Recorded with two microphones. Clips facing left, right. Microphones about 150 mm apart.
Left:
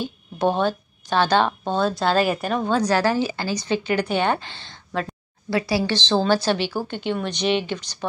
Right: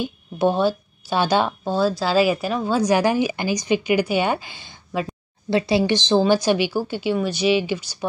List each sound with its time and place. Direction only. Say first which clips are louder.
0.0 s a woman's voice: right 2 dB; 10° right (ahead or behind)
5.5 s a woman's voice: right 3 dB; 25° right (ahead or behind)